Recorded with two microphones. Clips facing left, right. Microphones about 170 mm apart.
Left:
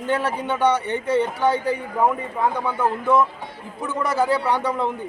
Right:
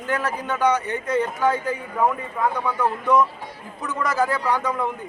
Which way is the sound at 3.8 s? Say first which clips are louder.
Left 1 dB; 30° left (ahead or behind).